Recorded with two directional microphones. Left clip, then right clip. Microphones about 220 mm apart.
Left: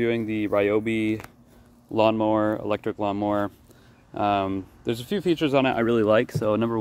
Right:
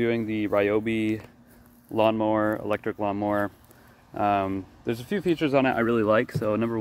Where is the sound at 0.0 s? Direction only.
5° left (ahead or behind).